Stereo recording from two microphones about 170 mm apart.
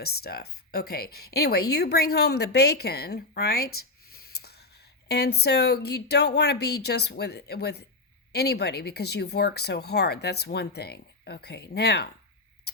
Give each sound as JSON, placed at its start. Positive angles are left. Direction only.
{"t": 0.0, "sound": "speech", "side_deg": 65}
{"t": 12.7, "sound": "tick-tock", "side_deg": 70}